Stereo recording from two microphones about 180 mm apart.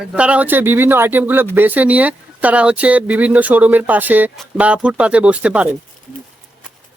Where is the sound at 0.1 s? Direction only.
5° right (ahead or behind).